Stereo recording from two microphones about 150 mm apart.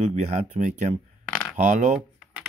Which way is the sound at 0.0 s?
50° right (ahead or behind).